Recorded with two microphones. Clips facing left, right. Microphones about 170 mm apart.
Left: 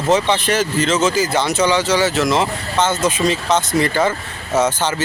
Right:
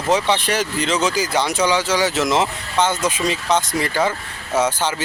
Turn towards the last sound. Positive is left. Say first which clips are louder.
# left 2 dB
turn(degrees=-10)  # may be behind; listen again after turning